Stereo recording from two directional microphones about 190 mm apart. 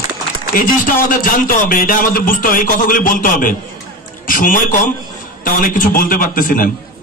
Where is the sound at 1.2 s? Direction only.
45° left (ahead or behind).